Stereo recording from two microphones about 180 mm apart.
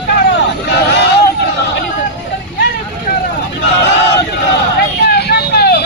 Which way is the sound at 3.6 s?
75° left (ahead or behind).